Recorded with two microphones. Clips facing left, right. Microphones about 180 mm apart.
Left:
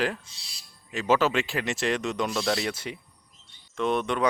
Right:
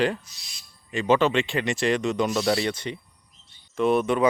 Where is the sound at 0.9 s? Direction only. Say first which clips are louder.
Right 3 dB; 5° left (ahead or behind).